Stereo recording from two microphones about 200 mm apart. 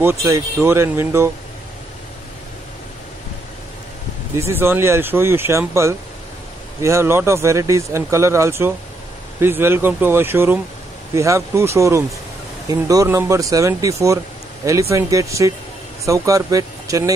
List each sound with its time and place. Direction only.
0.0 s speech: 15° right (ahead or behind)
4.4 s speech: 10° right (ahead or behind)